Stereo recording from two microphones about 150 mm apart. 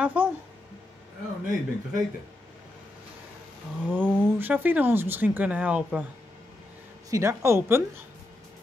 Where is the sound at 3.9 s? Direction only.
10° right (ahead or behind).